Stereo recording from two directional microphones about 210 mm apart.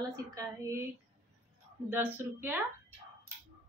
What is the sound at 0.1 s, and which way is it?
Speech, 15° right (ahead or behind).